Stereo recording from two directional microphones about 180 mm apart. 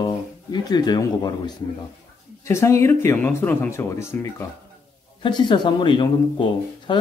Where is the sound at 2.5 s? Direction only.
15° left (ahead or behind).